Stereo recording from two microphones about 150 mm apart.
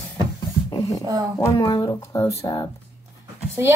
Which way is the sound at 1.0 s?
25° right (ahead or behind).